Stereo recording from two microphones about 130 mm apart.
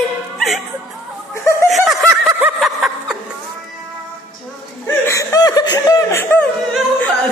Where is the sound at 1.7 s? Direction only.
Centre (ahead or behind).